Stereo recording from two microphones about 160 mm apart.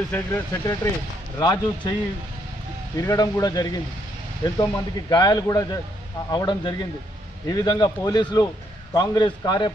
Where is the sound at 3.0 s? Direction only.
20° left (ahead or behind).